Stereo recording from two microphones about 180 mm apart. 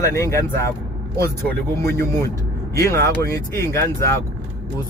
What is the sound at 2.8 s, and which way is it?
Speech, 15° left (ahead or behind).